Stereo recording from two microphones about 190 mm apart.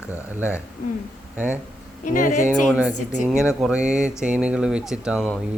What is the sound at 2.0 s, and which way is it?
Speech, 45° left (ahead or behind).